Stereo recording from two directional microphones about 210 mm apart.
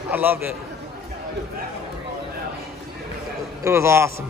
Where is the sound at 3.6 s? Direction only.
15° right (ahead or behind).